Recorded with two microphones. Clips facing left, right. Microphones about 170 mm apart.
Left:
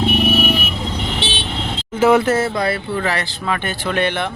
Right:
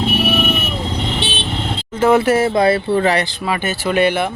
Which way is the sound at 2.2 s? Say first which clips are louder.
Right 3 dB; 10° right (ahead or behind).